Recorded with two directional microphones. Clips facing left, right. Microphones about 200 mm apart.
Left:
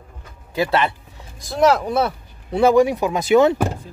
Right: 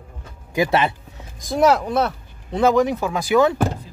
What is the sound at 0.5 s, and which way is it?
Speech, 20° right (ahead or behind).